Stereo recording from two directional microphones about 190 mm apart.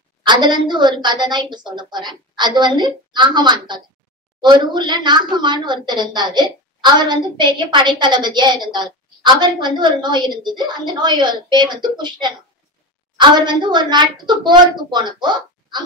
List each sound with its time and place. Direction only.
0.2 s a woman's voice: 25° right (ahead or behind)